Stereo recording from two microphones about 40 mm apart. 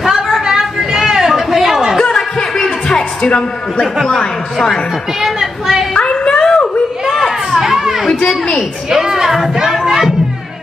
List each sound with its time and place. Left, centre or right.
0.0 s chatter: centre
2.1 s music: centre
3.2 s a man's voice: left
3.8 s speech: centre
5.2 s a sound: centre
6.3 s a sound: centre
7.1 s children playing: centre
8.3 s a woman's voice: centre
8.9 s speech: centre